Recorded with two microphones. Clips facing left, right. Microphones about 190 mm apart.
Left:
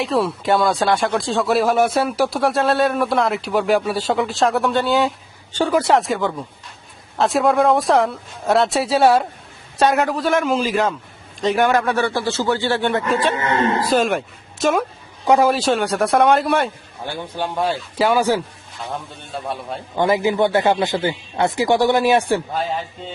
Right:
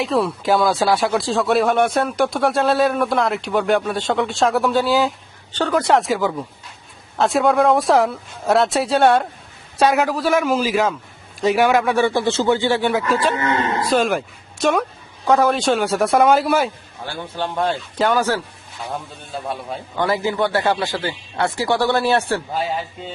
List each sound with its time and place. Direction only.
0.0 s a man's voice: centre (ahead or behind)
12.9 s speech: centre (ahead or behind)
15.2 s speech: 15° left (ahead or behind)
17.1 s speech: 15° left (ahead or behind)
17.5 s speech: centre (ahead or behind)
18.9 s speech: centre (ahead or behind)
20.0 s speech: 15° left (ahead or behind)